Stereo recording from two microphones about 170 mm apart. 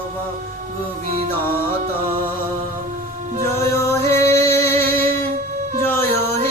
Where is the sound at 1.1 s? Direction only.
55° right (ahead or behind).